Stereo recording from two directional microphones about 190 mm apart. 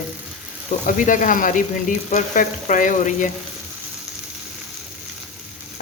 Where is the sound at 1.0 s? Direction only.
45° left (ahead or behind).